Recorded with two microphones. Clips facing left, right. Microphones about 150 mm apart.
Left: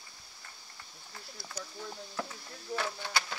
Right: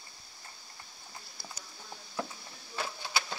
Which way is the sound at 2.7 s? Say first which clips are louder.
Left 2 dB; 20° right (ahead or behind).